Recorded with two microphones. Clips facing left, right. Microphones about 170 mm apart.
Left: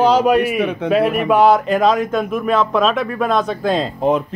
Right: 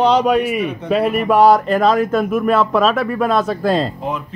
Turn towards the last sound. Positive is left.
turn(degrees=0)  # may be behind; listen again after turning